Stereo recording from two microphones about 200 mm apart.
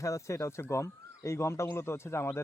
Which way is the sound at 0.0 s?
15° left (ahead or behind).